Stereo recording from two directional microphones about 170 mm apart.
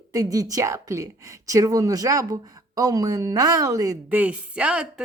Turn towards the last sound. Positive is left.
turn(degrees=-5)  # may be behind; listen again after turning